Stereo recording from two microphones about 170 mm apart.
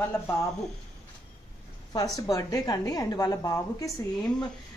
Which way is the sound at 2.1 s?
20° left (ahead or behind).